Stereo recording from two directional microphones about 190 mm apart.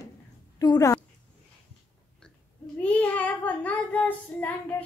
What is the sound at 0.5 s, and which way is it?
Speech, 20° left (ahead or behind).